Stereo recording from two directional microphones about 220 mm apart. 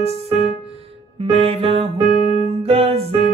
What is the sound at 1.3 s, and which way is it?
Music, 25° right (ahead or behind).